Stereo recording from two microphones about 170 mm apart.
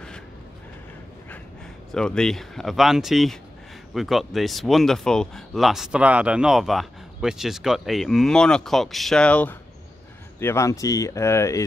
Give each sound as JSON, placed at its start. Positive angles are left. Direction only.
{"t": 1.9, "sound": "speech", "side_deg": 5}